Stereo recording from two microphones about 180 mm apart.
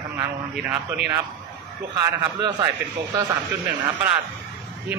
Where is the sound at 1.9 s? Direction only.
25° right (ahead or behind).